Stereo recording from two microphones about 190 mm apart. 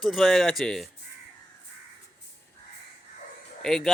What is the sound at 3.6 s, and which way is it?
Speech, centre (ahead or behind).